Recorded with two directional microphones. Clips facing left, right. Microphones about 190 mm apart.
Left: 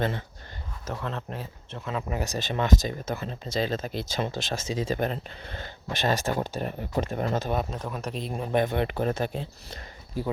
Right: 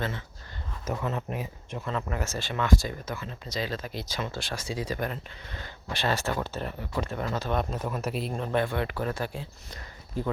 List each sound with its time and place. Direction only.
0.9 s speech: 10° right (ahead or behind)
1.8 s speech: 10° left (ahead or behind); by 5.6 s 30° left (ahead or behind)
5.9 s speech: 15° left (ahead or behind)
7.5 s speech: 5° left (ahead or behind)
8.3 s speech: 15° left (ahead or behind)